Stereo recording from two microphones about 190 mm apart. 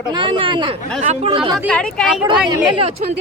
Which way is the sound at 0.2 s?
25° right (ahead or behind).